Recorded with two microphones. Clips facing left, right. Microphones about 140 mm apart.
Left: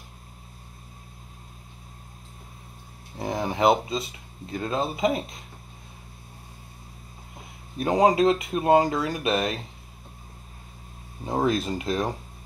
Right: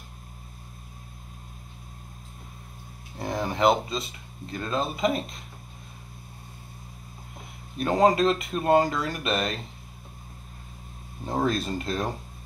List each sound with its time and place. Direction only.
3.2 s speech: 20° left (ahead or behind)
7.7 s speech: 15° left (ahead or behind)
11.2 s speech: 15° left (ahead or behind)